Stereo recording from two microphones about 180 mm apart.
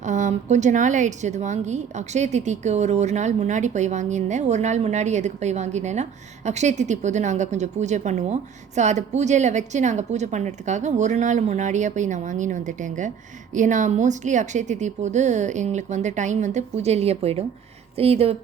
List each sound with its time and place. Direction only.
0.0 s a woman's voice: 45° right (ahead or behind)